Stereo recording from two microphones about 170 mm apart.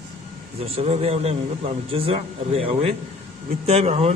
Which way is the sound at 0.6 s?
35° right (ahead or behind).